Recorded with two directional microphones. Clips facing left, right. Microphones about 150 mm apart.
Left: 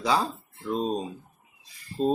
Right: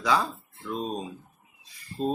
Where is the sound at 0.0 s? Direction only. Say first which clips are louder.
Even; 30° left (ahead or behind).